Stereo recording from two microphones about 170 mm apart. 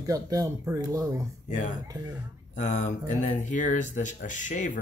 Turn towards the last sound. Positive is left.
turn(degrees=50)  # may be behind; listen again after turning